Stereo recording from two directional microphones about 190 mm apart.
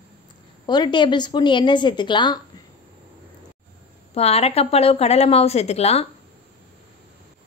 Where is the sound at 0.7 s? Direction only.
25° left (ahead or behind).